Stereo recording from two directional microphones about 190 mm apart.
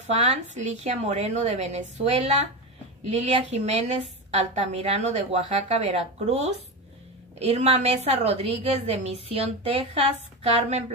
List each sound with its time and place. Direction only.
0.0 s a woman's voice: 35° right (ahead or behind)